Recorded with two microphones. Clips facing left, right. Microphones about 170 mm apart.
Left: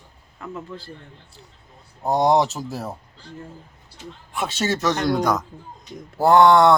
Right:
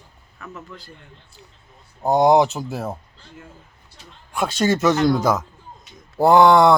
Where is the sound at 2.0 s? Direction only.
Centre (ahead or behind).